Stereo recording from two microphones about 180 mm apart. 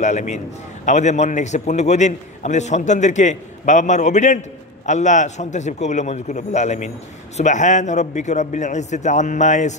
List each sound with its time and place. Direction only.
0.0 s a man's voice: 40° left (ahead or behind)